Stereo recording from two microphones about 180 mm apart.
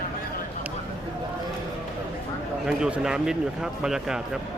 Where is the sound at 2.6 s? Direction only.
5° right (ahead or behind).